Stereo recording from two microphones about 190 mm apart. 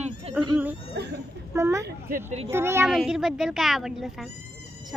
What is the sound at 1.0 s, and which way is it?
Speech, 60° right (ahead or behind).